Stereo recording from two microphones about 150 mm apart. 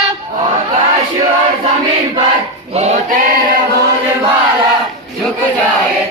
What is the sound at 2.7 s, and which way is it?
Choir, 50° right (ahead or behind).